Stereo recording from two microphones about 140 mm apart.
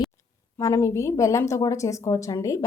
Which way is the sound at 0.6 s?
20° left (ahead or behind).